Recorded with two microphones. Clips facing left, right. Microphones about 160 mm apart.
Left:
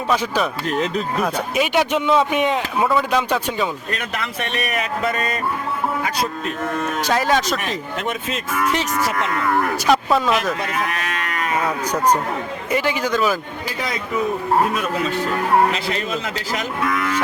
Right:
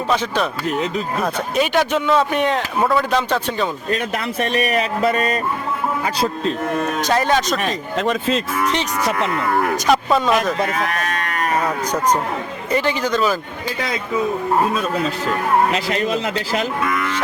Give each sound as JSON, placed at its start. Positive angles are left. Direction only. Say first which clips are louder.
{"t": 1.5, "sound": "a man's voice", "louder": "right 1 dB", "side_deg": 10}
{"t": 2.4, "sound": "speech", "louder": "right 1 dB", "side_deg": 5}
{"t": 4.2, "sound": "speech", "louder": "right 5 dB", "side_deg": -35}
{"t": 7.1, "sound": "speech", "louder": "right 1 dB", "side_deg": 0}
{"t": 7.6, "sound": "speech", "louder": "right 4 dB", "side_deg": -30}
{"t": 9.8, "sound": "speech", "louder": "even", "side_deg": 5}
{"t": 10.9, "sound": "livestock", "louder": "right 2 dB", "side_deg": -40}
{"t": 11.9, "sound": "a man's voice", "louder": "even", "side_deg": 10}
{"t": 15.7, "sound": "speech", "louder": "right 4 dB", "side_deg": -35}
{"t": 16.9, "sound": "speech", "louder": "even", "side_deg": 5}